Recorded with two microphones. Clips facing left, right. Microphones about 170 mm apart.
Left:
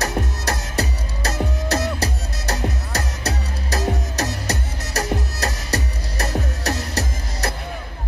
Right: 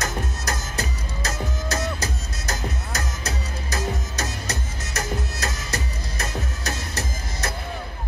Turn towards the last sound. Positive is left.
turn(degrees=35)  # may be behind; listen again after turning